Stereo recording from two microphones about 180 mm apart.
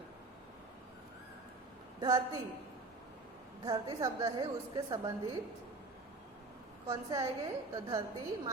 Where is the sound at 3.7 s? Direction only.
20° right (ahead or behind).